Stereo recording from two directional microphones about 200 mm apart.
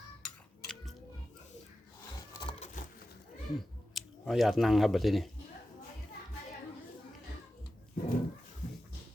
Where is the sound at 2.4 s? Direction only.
30° left (ahead or behind).